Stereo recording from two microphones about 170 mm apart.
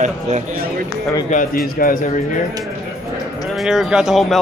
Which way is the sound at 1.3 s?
55° left (ahead or behind).